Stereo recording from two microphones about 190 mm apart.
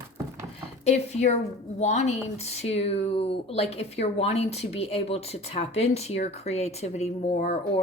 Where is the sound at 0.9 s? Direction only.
35° left (ahead or behind).